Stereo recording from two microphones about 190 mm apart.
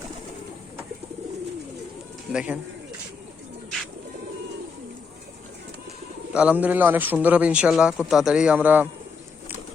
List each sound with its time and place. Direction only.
2.3 s speech: 5° right (ahead or behind)
6.3 s a man's voice: 5° right (ahead or behind)